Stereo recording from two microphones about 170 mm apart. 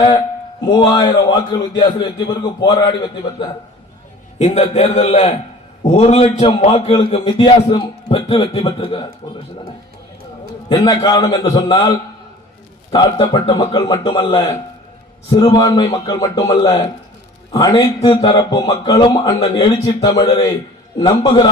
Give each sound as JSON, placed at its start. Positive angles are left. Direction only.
{"t": 0.6, "sound": "speech", "side_deg": 25}
{"t": 4.4, "sound": "a man's voice", "side_deg": 40}
{"t": 10.7, "sound": "speech", "side_deg": 25}